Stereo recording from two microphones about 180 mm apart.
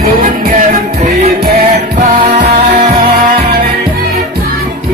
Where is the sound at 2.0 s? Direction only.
40° right (ahead or behind); by 3.6 s 60° right (ahead or behind).